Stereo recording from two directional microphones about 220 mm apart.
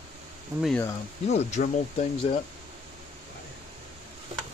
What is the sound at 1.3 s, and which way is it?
Speech, 30° left (ahead or behind).